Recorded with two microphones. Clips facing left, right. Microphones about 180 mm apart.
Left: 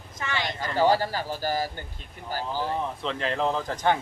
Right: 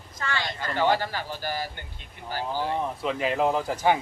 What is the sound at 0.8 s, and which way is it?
A man's voice, 40° left (ahead or behind).